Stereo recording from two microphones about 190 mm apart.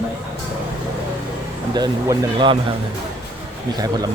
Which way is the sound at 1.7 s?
20° right (ahead or behind).